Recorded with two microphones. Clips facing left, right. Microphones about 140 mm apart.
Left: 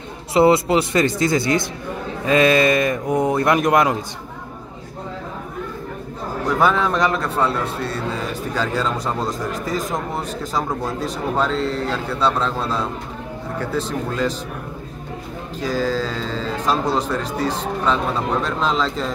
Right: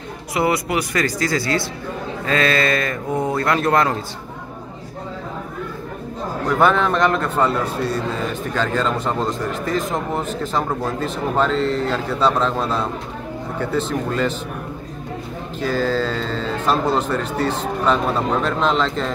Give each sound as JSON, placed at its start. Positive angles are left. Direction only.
{"t": 0.3, "sound": "speech", "side_deg": 25}
{"t": 6.6, "sound": "a man's voice", "side_deg": 5}
{"t": 11.3, "sound": "a man's voice", "side_deg": 0}
{"t": 15.6, "sound": "a man's voice", "side_deg": 0}